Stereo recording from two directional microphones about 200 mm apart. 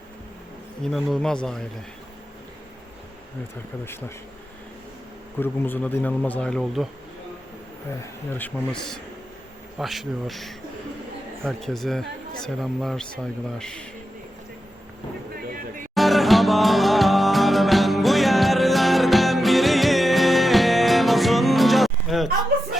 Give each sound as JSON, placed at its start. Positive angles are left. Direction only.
{"t": 0.9, "sound": "speech", "side_deg": 0}
{"t": 5.4, "sound": "speech", "side_deg": 10}
{"t": 8.4, "sound": "speech", "side_deg": 5}
{"t": 15.4, "sound": "a sound", "side_deg": -45}
{"t": 16.0, "sound": "music", "side_deg": 0}